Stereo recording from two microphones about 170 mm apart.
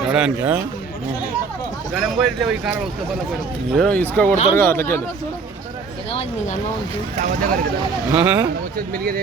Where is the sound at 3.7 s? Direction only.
5° left (ahead or behind).